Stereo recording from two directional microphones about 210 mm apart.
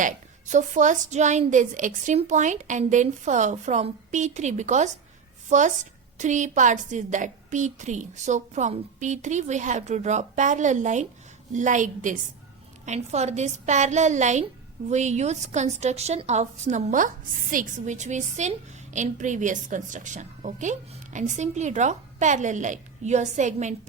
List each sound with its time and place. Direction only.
0.0 s a woman's voice: 35° right (ahead or behind)